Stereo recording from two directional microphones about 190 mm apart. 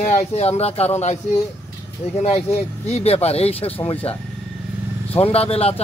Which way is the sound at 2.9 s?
35° left (ahead or behind).